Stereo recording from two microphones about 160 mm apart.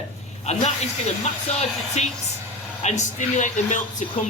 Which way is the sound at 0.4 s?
45° left (ahead or behind).